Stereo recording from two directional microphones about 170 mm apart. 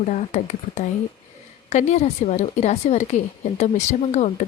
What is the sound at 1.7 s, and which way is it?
Speech, 40° left (ahead or behind).